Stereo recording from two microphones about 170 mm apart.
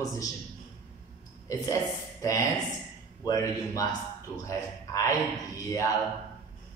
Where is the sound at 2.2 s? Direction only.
20° left (ahead or behind).